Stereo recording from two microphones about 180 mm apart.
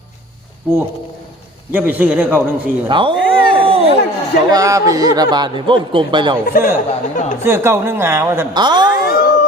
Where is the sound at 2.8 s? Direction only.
25° right (ahead or behind).